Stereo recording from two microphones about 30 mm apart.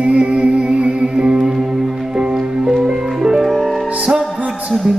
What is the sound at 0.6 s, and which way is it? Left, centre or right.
Music, right.